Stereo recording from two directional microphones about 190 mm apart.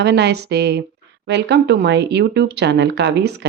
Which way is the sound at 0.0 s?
60° right (ahead or behind).